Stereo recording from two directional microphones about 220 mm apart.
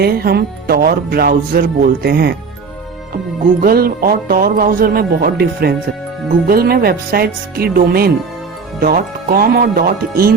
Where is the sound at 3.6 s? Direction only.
40° right (ahead or behind).